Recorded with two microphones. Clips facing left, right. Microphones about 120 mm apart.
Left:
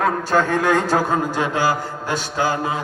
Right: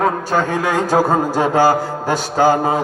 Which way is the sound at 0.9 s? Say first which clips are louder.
Right 5 dB; 40° right (ahead or behind).